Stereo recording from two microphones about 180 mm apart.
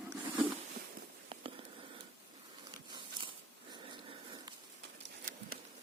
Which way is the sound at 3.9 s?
25° right (ahead or behind).